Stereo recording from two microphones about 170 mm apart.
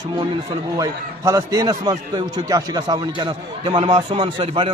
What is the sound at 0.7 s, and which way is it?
A man's voice, 20° right (ahead or behind).